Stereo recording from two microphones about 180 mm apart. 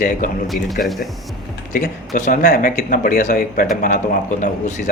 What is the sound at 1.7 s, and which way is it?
Speech, 50° left (ahead or behind).